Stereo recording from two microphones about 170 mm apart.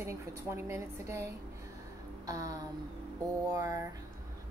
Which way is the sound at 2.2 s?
20° right (ahead or behind).